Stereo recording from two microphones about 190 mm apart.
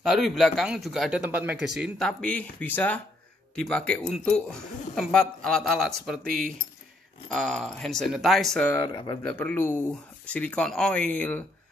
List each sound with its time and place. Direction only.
0.0 s speech: centre (ahead or behind)
8.8 s speech: 25° left (ahead or behind)
9.3 s speech: 10° left (ahead or behind)